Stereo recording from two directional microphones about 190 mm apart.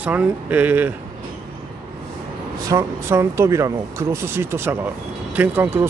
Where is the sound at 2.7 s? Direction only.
15° right (ahead or behind).